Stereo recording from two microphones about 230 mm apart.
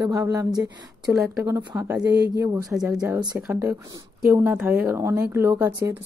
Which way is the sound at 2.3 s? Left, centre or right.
Centre.